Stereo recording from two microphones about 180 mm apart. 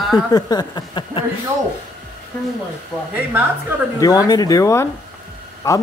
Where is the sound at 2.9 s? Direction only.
Centre (ahead or behind).